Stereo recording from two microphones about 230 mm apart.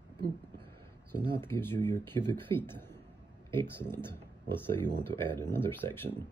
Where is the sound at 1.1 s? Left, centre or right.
Right.